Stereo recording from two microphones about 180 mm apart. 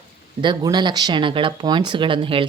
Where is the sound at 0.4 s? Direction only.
25° right (ahead or behind).